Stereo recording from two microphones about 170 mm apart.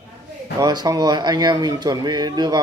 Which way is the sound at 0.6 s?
25° right (ahead or behind).